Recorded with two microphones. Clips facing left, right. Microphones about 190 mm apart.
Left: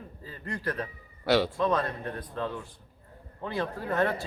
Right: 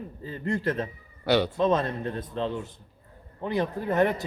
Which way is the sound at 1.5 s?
20° right (ahead or behind).